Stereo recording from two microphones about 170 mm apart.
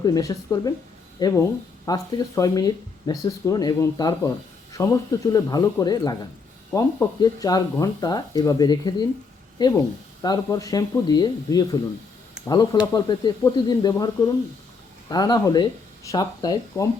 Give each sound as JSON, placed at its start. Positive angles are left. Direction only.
{"t": 0.0, "sound": "speech", "side_deg": 20}